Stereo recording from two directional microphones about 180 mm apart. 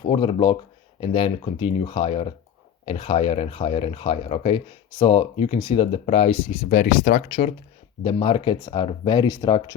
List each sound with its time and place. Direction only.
0.0 s speech: 30° left (ahead or behind); by 7.3 s 50° left (ahead or behind)
8.0 s speech: 30° left (ahead or behind)